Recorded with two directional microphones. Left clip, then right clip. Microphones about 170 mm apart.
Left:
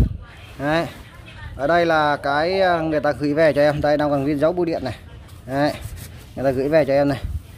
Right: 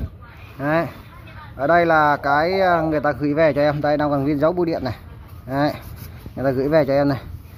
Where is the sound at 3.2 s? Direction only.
45° left (ahead or behind).